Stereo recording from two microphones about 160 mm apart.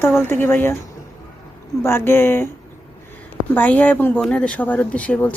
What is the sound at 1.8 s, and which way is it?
Speech, 15° left (ahead or behind).